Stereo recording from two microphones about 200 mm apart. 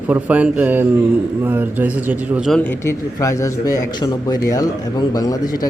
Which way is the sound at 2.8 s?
15° left (ahead or behind).